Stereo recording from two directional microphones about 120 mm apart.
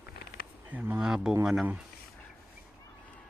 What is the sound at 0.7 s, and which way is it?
Speech, 15° right (ahead or behind).